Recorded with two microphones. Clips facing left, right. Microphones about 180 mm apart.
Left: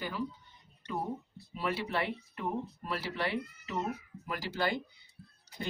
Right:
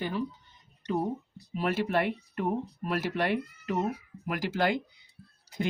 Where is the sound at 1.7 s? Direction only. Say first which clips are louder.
Right 6 dB; 50° right (ahead or behind).